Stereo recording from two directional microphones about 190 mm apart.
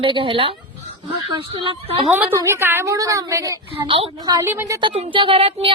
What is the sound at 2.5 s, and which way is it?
A woman's voice, 10° right (ahead or behind).